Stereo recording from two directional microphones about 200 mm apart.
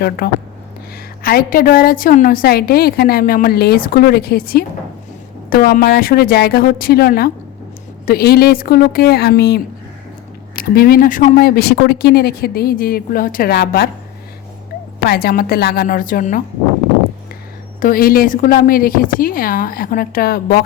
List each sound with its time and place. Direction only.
0.2 s a woman's voice: 50° left (ahead or behind)
14.9 s a woman's voice: 50° left (ahead or behind)
17.7 s a woman's voice: 45° left (ahead or behind)